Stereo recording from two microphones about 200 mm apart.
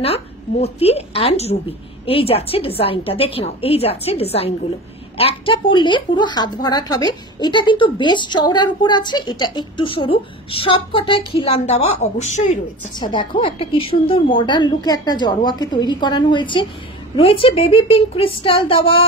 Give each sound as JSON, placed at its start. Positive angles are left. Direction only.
{"t": 0.0, "sound": "a woman's voice", "side_deg": 30}
{"t": 13.0, "sound": "speech", "side_deg": 25}